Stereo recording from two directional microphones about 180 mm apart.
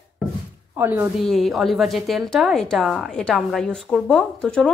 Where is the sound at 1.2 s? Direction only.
Centre (ahead or behind).